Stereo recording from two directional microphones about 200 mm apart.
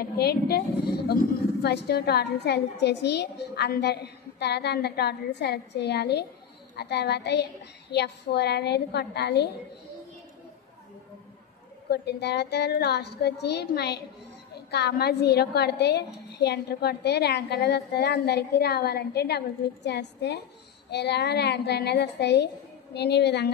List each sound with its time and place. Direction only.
0.2 s a woman's voice: 50° left (ahead or behind)
11.9 s a woman's voice: 55° left (ahead or behind)